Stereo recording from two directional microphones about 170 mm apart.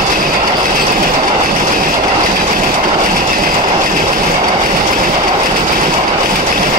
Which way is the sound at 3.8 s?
50° right (ahead or behind).